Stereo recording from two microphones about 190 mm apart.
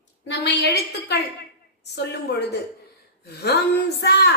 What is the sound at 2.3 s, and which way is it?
A woman's voice, 60° left (ahead or behind).